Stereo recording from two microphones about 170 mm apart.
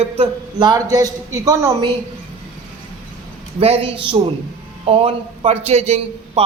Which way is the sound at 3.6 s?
35° right (ahead or behind).